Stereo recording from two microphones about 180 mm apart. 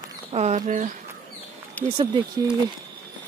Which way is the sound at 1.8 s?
10° left (ahead or behind).